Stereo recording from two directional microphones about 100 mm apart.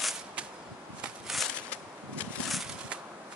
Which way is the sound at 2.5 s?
5° right (ahead or behind).